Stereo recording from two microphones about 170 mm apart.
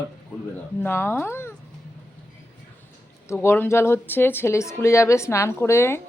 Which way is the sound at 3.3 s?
15° left (ahead or behind).